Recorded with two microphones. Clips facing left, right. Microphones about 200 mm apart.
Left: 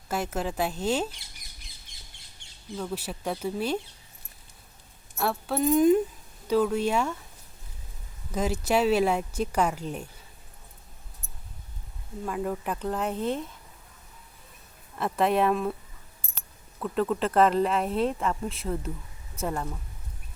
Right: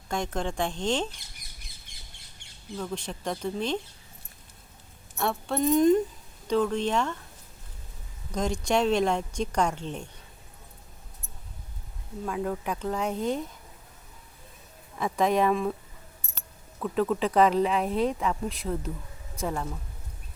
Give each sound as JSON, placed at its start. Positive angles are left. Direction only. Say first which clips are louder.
{"t": 0.1, "sound": "speech", "louder": "even", "side_deg": 5}
{"t": 2.7, "sound": "speech", "louder": "left 1 dB", "side_deg": 5}
{"t": 5.1, "sound": "speech", "louder": "even", "side_deg": 5}
{"t": 8.3, "sound": "speech", "louder": "left 1 dB", "side_deg": 5}
{"t": 12.2, "sound": "speech", "louder": "even", "side_deg": 0}
{"t": 14.9, "sound": "speech", "louder": "even", "side_deg": 5}
{"t": 16.8, "sound": "speech", "louder": "right 1 dB", "side_deg": 0}